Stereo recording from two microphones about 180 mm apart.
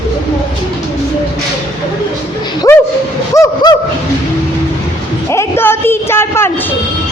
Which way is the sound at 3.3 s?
15° left (ahead or behind).